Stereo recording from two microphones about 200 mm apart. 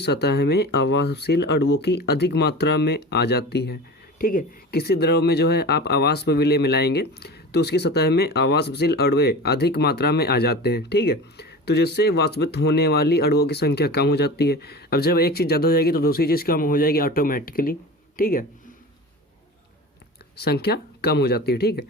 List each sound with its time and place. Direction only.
0.0 s speech: 55° left (ahead or behind)
20.3 s speech: 55° left (ahead or behind)